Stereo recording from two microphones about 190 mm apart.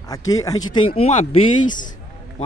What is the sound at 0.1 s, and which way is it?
Speech, 20° left (ahead or behind).